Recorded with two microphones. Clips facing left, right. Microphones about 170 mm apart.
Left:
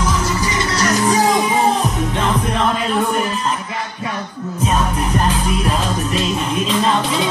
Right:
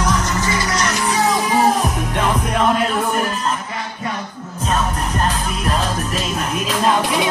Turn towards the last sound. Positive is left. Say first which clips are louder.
# even
turn(degrees=-10)  # may be behind; listen again after turning